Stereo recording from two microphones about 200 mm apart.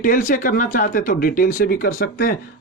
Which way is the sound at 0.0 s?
40° left (ahead or behind).